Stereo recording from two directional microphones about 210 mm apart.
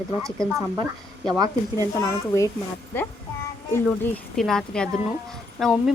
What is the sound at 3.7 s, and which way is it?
A woman's voice, 10° left (ahead or behind).